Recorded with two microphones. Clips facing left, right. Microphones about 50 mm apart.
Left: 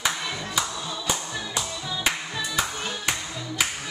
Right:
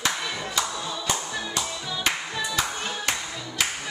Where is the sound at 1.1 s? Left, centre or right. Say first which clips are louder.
Even; centre.